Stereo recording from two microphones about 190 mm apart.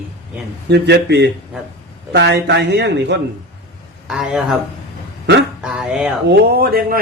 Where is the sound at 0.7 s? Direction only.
65° right (ahead or behind).